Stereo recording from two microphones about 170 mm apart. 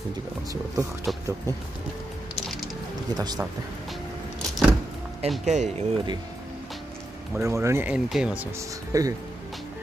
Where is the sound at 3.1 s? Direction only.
20° right (ahead or behind).